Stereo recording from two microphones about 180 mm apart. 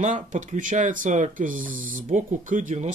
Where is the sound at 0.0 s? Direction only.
45° right (ahead or behind).